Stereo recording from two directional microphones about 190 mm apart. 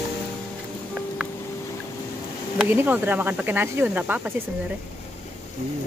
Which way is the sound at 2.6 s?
10° right (ahead or behind).